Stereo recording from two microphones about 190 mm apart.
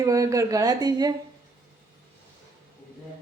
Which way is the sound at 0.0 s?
15° right (ahead or behind).